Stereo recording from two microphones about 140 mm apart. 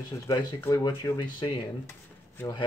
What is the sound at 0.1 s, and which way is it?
Speech, 20° left (ahead or behind).